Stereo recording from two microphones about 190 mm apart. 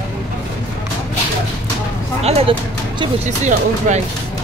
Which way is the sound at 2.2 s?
35° right (ahead or behind).